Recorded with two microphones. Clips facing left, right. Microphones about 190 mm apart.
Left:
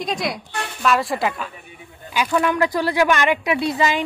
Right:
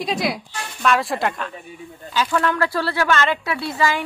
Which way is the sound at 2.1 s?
15° left (ahead or behind).